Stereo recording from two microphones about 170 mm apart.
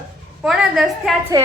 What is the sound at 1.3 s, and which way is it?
Speech, 20° right (ahead or behind).